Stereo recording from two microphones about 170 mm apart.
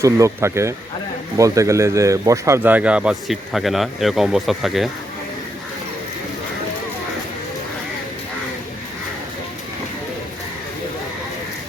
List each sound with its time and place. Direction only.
0.0 s speech: 15° right (ahead or behind); by 4.9 s centre (ahead or behind)